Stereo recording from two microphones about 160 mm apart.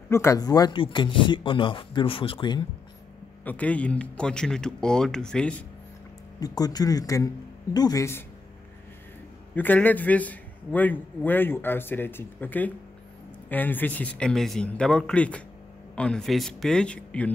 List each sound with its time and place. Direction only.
0.1 s speech: 15° left (ahead or behind)
3.4 s speech: 10° left (ahead or behind)
6.4 s speech: 25° left (ahead or behind)
9.6 s a man's voice: 10° left (ahead or behind)